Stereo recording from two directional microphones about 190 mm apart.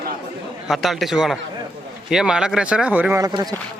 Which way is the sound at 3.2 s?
20° right (ahead or behind).